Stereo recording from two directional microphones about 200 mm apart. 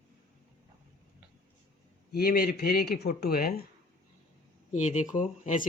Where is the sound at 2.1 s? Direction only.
50° left (ahead or behind).